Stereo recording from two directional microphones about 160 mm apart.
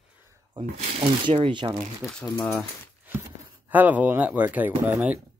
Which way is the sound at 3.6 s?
10° right (ahead or behind).